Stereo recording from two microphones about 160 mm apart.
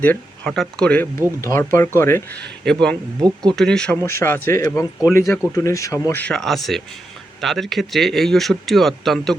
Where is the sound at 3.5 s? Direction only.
5° left (ahead or behind).